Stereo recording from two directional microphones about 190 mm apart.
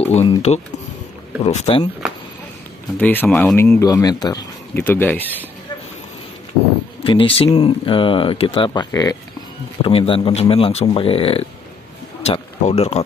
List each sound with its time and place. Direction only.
0.0 s speech: 35° left (ahead or behind)
3.0 s speech: 10° left (ahead or behind)
3.8 s speech: 20° left (ahead or behind)
7.0 s speech: 30° left (ahead or behind)